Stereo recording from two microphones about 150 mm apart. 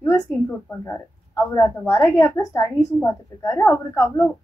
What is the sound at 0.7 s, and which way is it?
A woman's voice, 20° left (ahead or behind).